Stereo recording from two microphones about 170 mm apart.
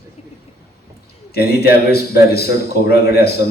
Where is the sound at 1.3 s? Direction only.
65° left (ahead or behind).